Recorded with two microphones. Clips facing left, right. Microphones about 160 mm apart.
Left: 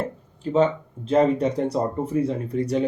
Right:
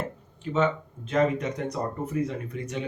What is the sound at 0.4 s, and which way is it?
Speech, 35° left (ahead or behind).